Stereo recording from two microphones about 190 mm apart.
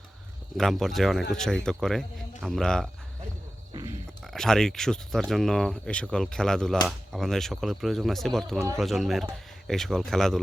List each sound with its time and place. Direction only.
0.5 s speech: centre (ahead or behind)
3.7 s a sound: 20° right (ahead or behind)
4.2 s speech: centre (ahead or behind)